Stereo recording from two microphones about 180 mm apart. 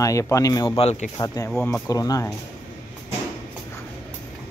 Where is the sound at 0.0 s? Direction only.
15° left (ahead or behind); by 1.1 s 35° left (ahead or behind).